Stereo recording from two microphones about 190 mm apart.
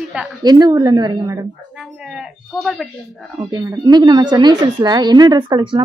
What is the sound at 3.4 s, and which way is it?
Speech, 20° right (ahead or behind).